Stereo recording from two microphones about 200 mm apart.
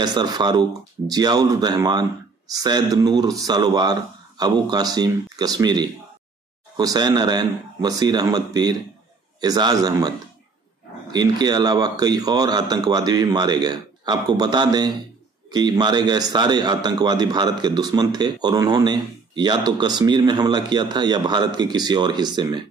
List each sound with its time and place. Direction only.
0.0 s a man's voice: 20° right (ahead or behind)
11.1 s a man's voice: 20° right (ahead or behind)